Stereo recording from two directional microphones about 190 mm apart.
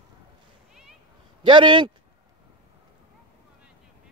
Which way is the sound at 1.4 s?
25° right (ahead or behind).